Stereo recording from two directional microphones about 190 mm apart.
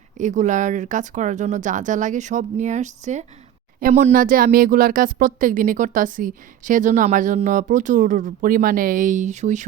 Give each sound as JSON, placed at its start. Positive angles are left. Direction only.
{"t": 0.2, "sound": "speech", "side_deg": -40}